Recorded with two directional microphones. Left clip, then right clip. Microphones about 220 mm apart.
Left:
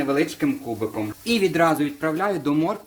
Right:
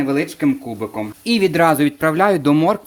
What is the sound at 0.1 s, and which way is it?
Speech, 40° right (ahead or behind).